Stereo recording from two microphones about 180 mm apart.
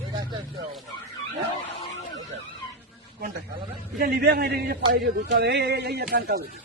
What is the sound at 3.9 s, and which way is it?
A man's voice, 55° right (ahead or behind).